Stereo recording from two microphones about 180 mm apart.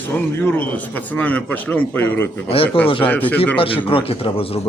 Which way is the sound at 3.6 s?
30° left (ahead or behind).